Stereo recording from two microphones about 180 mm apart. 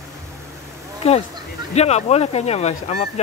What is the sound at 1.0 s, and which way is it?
Speech, 35° left (ahead or behind).